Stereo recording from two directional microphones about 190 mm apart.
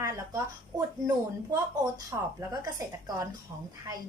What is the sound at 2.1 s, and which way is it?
A woman's voice, 15° right (ahead or behind).